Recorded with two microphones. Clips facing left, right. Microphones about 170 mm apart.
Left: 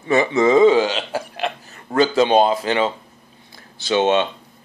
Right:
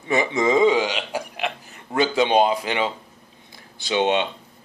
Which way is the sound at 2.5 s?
15° right (ahead or behind).